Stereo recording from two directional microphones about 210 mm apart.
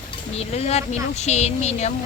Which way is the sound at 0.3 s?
30° left (ahead or behind).